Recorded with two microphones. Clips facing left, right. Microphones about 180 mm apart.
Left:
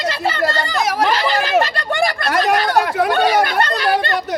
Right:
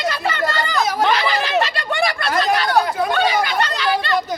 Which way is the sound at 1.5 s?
45° left (ahead or behind).